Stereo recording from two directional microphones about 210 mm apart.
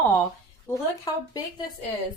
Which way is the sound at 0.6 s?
15° left (ahead or behind).